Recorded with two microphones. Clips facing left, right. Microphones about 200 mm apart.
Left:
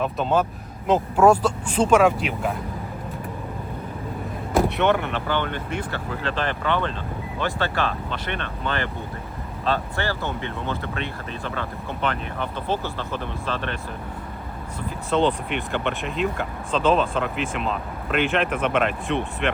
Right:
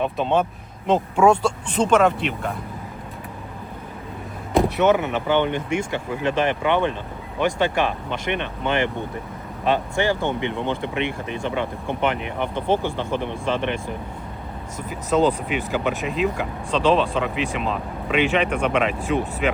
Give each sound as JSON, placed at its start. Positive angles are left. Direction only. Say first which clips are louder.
{"t": 0.0, "sound": "speech", "louder": "right 1 dB", "side_deg": 0}
{"t": 4.5, "sound": "speech", "louder": "right 3 dB", "side_deg": 0}
{"t": 5.3, "sound": "speech", "louder": "right 7 dB", "side_deg": -15}
{"t": 14.8, "sound": "speech", "louder": "right 2 dB", "side_deg": 0}